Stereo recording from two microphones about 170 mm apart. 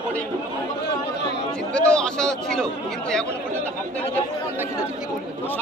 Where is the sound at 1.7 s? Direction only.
5° left (ahead or behind).